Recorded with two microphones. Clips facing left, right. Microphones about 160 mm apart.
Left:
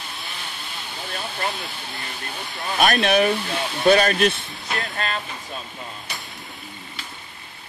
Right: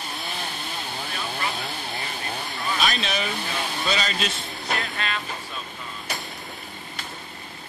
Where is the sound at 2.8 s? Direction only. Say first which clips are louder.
Left 11 dB; 60° left (ahead or behind).